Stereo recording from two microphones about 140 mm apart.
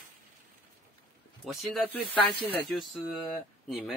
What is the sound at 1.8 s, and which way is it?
Speech, 10° left (ahead or behind).